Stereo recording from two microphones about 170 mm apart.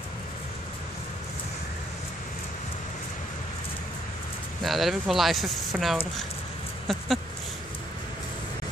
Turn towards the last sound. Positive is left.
turn(degrees=0)  # may be behind; listen again after turning